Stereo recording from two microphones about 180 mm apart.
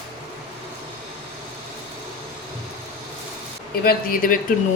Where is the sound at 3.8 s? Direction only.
55° left (ahead or behind).